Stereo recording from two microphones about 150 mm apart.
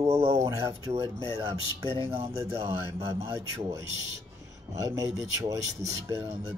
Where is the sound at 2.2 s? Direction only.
20° right (ahead or behind).